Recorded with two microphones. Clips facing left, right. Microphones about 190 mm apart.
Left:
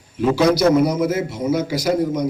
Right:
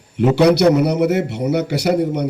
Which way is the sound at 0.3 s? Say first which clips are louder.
Right 2 dB; 70° right (ahead or behind).